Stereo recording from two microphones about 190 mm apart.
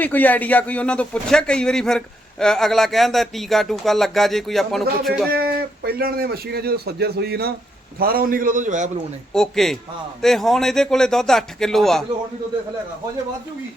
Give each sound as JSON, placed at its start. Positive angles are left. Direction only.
{"t": 0.0, "sound": "speech", "side_deg": 10}
{"t": 5.3, "sound": "a man's voice", "side_deg": -55}
{"t": 9.3, "sound": "speech", "side_deg": 0}